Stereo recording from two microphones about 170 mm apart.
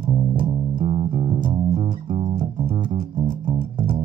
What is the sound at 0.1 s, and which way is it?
Music, 30° right (ahead or behind).